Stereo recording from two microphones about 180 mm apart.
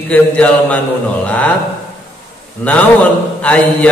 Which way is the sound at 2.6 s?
5° left (ahead or behind).